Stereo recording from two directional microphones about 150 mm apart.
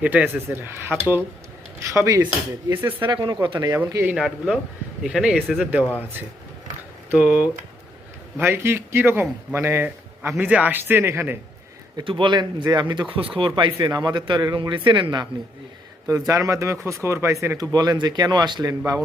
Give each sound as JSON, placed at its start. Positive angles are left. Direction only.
{"t": 0.0, "sound": "speech", "side_deg": -10}
{"t": 3.0, "sound": "speech", "side_deg": -30}
{"t": 4.1, "sound": "speech", "side_deg": 0}
{"t": 7.2, "sound": "a man's voice", "side_deg": -10}
{"t": 11.9, "sound": "speech", "side_deg": -35}
{"t": 16.0, "sound": "speech", "side_deg": -20}
{"t": 18.7, "sound": "speech", "side_deg": -15}